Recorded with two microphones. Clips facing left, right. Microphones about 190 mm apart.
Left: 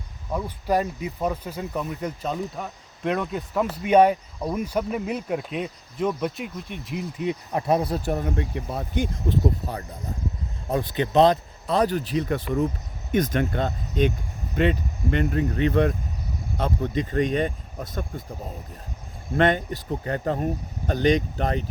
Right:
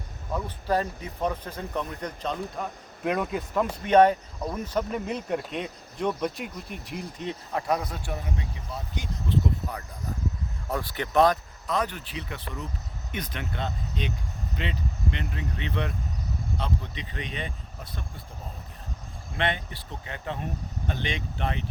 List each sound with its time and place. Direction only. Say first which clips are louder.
0.3 s speech: left 3 dB; 10° left (ahead or behind)
7.5 s speech: left 5 dB; 30° left (ahead or behind)
8.1 s speech: left 8 dB; 55° left (ahead or behind)
10.7 s speech: left 6 dB; 20° left (ahead or behind); by 18.0 s 45° left (ahead or behind)
19.4 s speech: left 9 dB; 45° left (ahead or behind)